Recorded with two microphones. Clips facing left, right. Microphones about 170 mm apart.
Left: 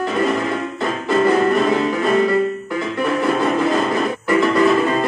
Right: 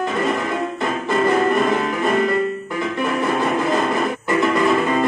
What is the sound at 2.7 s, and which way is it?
Music, 20° right (ahead or behind).